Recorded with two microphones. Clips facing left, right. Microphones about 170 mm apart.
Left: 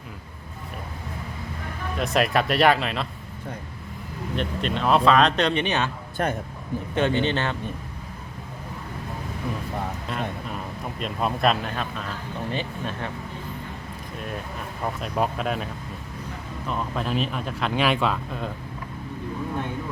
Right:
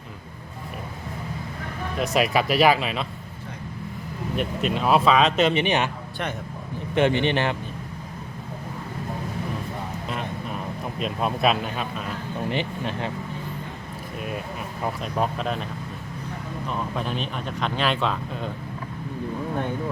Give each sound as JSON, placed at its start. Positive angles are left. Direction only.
{"t": 2.0, "sound": "speech", "side_deg": 0}
{"t": 4.4, "sound": "speech", "side_deg": -5}
{"t": 5.6, "sound": "a man's voice", "side_deg": -15}
{"t": 6.2, "sound": "speech", "side_deg": 45}
{"t": 6.9, "sound": "a man's voice", "side_deg": -15}
{"t": 11.0, "sound": "speech", "side_deg": 0}
{"t": 12.5, "sound": "speech", "side_deg": -20}
{"t": 14.8, "sound": "speech", "side_deg": 0}
{"t": 16.6, "sound": "speech", "side_deg": 0}